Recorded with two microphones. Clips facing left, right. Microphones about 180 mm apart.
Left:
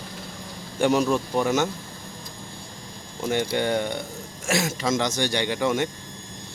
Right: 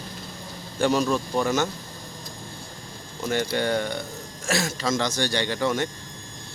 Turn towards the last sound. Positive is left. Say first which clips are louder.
# left 1 dB
turn(degrees=15)  # may be behind; listen again after turning